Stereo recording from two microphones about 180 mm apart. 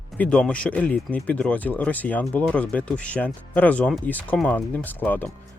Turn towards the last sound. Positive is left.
turn(degrees=10)  # may be behind; listen again after turning